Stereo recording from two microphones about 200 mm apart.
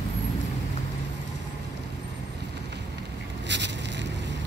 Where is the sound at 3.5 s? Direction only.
60° right (ahead or behind).